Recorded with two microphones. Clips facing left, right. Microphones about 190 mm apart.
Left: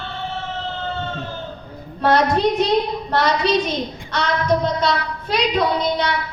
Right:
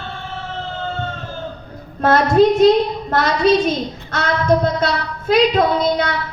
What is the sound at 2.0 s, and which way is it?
A woman's voice, 45° right (ahead or behind).